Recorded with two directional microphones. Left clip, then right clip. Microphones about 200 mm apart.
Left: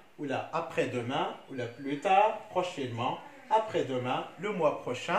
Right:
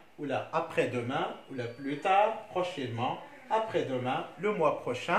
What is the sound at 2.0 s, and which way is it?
Speech, 20° right (ahead or behind).